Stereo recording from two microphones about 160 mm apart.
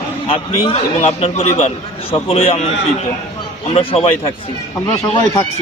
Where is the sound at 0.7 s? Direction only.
40° left (ahead or behind).